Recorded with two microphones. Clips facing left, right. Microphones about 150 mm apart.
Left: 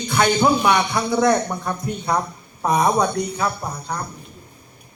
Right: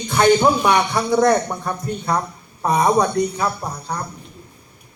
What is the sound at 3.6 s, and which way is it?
Speech, 20° right (ahead or behind).